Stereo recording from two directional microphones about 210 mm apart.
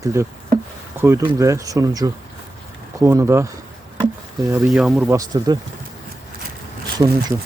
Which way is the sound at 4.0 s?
15° right (ahead or behind).